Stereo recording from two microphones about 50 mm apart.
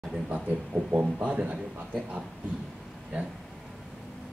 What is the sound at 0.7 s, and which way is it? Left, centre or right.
Speech, right.